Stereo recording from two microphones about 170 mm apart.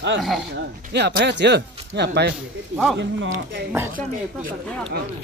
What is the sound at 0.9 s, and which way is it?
Speech, 90° right.